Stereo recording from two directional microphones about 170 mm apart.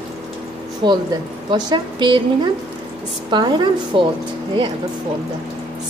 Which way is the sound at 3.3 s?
25° right (ahead or behind).